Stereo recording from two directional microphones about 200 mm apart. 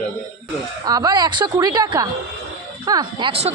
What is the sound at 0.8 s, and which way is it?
A woman's voice, 20° right (ahead or behind).